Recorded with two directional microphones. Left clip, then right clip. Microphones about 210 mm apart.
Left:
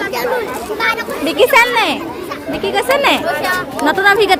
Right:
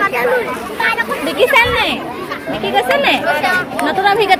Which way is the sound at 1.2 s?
20° left (ahead or behind).